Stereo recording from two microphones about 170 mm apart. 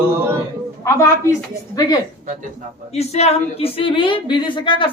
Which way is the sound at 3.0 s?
40° left (ahead or behind).